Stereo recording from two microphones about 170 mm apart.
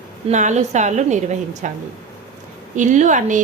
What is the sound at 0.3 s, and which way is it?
A woman's voice, 45° right (ahead or behind).